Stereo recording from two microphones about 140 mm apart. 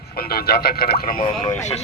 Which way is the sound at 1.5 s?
55° left (ahead or behind).